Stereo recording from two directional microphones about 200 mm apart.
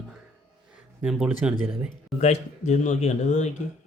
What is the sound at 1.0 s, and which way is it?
Speech, 5° right (ahead or behind).